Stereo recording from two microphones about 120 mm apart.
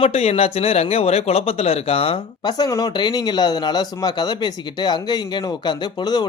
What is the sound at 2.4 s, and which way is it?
Speech, 30° left (ahead or behind).